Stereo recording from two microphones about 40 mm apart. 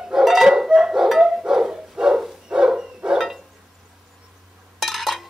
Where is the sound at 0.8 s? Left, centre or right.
Centre.